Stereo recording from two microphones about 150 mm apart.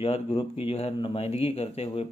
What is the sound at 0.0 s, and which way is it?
Speech, 40° left (ahead or behind).